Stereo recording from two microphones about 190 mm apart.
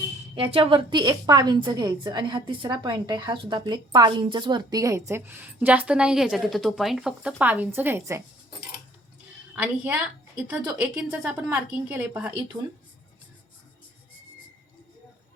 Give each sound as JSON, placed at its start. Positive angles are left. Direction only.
{"t": 0.3, "sound": "a woman's voice", "side_deg": -30}
{"t": 9.6, "sound": "a woman's voice", "side_deg": -5}